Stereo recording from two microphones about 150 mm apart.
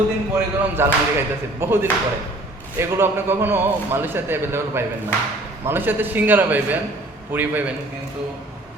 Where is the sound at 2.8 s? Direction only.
15° right (ahead or behind).